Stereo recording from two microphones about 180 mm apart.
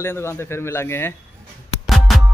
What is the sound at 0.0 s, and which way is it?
Speech, 15° left (ahead or behind).